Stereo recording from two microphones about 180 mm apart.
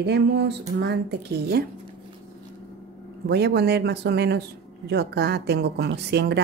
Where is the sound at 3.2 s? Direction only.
65° right (ahead or behind).